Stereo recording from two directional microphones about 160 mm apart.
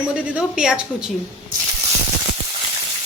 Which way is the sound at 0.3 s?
5° right (ahead or behind).